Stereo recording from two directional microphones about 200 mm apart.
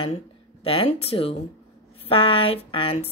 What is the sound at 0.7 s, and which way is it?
A woman's voice, 30° left (ahead or behind).